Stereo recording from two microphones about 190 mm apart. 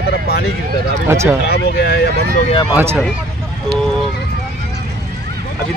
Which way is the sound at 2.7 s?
15° right (ahead or behind).